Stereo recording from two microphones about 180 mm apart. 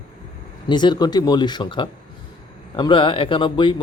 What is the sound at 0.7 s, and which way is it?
Speech, 25° left (ahead or behind).